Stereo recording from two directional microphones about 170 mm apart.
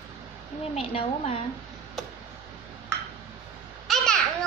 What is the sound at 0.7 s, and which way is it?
Speech, 35° left (ahead or behind).